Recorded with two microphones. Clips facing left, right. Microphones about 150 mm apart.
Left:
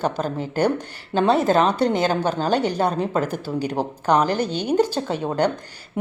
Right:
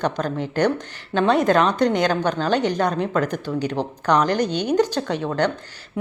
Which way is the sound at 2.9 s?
35° left (ahead or behind).